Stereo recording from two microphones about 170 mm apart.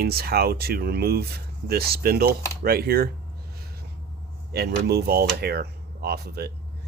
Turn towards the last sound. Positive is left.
turn(degrees=-65)  # may be behind; listen again after turning